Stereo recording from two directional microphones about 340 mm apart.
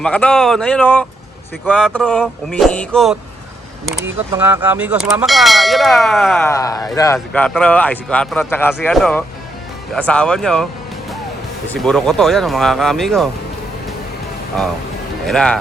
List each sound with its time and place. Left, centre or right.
0.0 s speech: centre
11.7 s speech: centre
15.3 s speech: centre